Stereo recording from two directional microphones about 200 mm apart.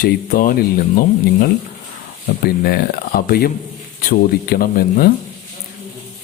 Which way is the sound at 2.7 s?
50° left (ahead or behind).